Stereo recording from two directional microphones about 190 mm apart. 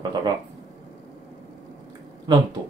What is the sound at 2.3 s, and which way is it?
Speech, 25° right (ahead or behind).